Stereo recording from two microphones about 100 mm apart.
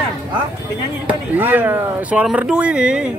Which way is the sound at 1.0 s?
15° right (ahead or behind).